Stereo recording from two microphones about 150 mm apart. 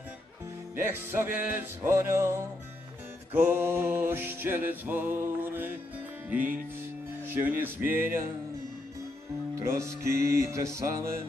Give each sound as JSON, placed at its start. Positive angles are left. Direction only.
{"t": 0.7, "sound": "music", "side_deg": -15}
{"t": 9.6, "sound": "music", "side_deg": -20}